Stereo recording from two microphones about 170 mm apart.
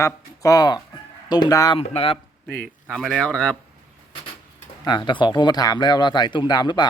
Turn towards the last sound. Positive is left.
turn(degrees=25)  # may be behind; listen again after turning